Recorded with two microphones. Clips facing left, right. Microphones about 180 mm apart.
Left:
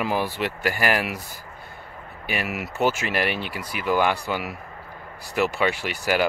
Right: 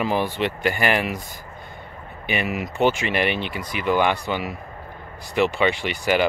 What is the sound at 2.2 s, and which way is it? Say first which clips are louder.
Speech: right 3 dB; 5° left (ahead or behind).